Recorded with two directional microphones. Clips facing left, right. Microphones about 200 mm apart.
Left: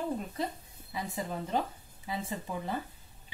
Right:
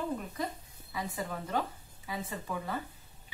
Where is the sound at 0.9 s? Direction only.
20° left (ahead or behind).